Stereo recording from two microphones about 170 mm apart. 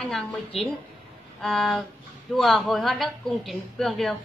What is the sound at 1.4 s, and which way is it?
A woman's voice, centre (ahead or behind).